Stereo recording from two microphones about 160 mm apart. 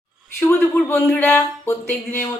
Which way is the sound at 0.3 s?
15° left (ahead or behind).